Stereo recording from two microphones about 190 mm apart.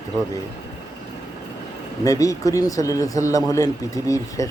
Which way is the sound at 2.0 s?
15° left (ahead or behind).